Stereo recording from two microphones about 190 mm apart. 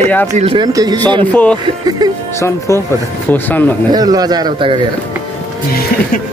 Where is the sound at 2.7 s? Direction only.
15° left (ahead or behind).